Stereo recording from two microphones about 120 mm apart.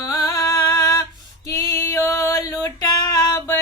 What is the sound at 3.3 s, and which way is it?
Music, 25° left (ahead or behind).